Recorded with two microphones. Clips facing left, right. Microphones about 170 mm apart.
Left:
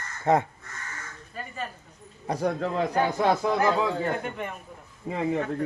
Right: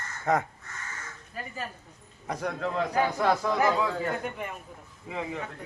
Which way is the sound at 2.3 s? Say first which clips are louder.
Left 4 dB; 30° left (ahead or behind).